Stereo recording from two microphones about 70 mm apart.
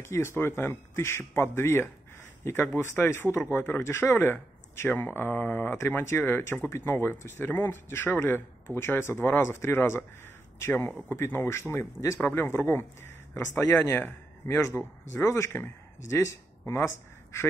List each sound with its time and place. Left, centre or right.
0.0 s speech: left
12.2 s speech: left
14.8 s speech: left